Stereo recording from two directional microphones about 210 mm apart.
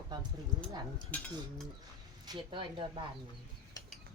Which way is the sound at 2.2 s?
25° right (ahead or behind).